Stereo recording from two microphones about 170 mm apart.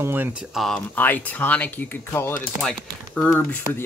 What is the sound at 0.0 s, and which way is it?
Speech, 10° right (ahead or behind).